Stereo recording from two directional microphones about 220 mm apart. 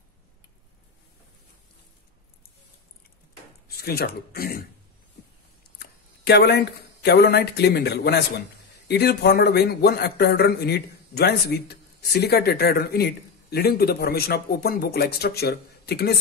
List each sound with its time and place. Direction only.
3.6 s speech: 45° left (ahead or behind)
5.8 s a man's voice: 50° left (ahead or behind)